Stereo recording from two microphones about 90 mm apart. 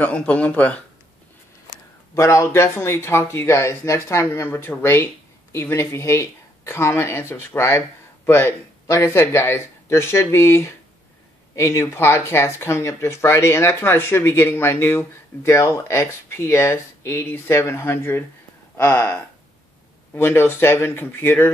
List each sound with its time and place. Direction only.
0.0 s speech: 15° left (ahead or behind)
2.1 s speech: 35° left (ahead or behind); by 19.1 s 20° left (ahead or behind)
20.2 s speech: 25° left (ahead or behind)